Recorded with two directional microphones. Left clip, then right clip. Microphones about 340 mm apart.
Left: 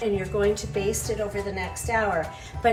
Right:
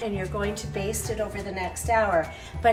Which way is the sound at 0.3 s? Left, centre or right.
Centre.